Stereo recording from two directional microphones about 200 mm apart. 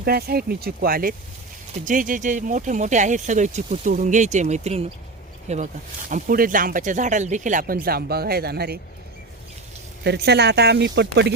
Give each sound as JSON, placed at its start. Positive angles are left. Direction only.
{"t": 0.0, "sound": "speech", "side_deg": -50}
{"t": 10.0, "sound": "speech", "side_deg": -55}